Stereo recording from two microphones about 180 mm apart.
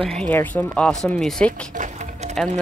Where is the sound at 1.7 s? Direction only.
45° right (ahead or behind).